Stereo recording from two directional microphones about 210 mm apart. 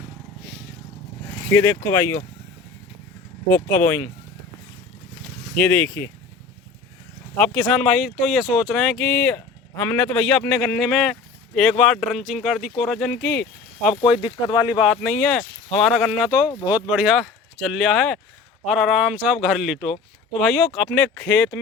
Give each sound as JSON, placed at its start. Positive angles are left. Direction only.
{"t": 1.5, "sound": "speech", "side_deg": 10}
{"t": 5.5, "sound": "speech", "side_deg": 5}
{"t": 7.4, "sound": "speech", "side_deg": 5}
{"t": 14.2, "sound": "speech", "side_deg": 25}
{"t": 14.8, "sound": "speech", "side_deg": 0}